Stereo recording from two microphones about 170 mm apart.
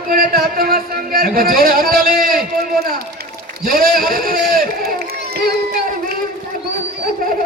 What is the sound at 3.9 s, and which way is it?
Speech, 60° right (ahead or behind).